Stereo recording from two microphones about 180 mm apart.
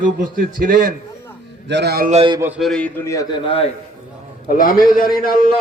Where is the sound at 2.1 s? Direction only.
35° right (ahead or behind).